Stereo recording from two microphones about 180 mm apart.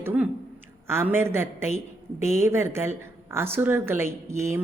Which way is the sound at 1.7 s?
40° left (ahead or behind).